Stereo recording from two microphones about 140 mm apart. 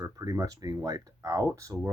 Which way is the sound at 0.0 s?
25° right (ahead or behind).